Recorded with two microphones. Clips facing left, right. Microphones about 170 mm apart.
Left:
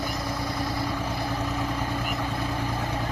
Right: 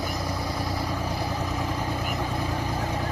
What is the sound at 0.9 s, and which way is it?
Vehicle, 10° right (ahead or behind).